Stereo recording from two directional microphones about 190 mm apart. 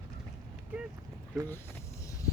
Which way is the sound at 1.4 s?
15° left (ahead or behind).